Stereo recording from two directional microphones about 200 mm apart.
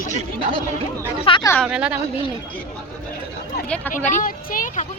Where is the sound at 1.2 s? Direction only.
25° left (ahead or behind).